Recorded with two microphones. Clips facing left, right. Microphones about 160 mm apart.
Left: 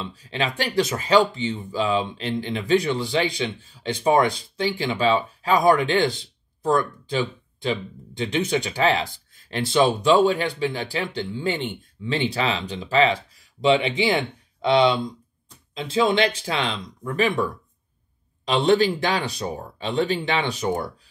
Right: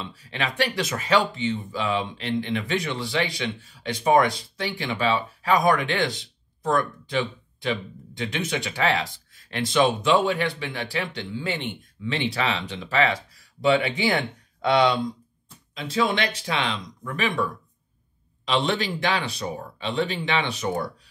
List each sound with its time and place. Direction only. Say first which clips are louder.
0.0 s speech: left 3 dB; 30° left (ahead or behind)
13.6 s speech: left 2 dB; 20° left (ahead or behind)
18.5 s speech: left 6 dB; 35° left (ahead or behind)